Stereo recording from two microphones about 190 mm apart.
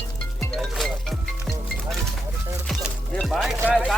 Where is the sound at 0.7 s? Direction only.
Centre (ahead or behind).